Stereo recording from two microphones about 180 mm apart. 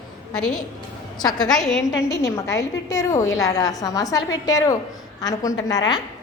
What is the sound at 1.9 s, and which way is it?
A woman's voice, 20° left (ahead or behind).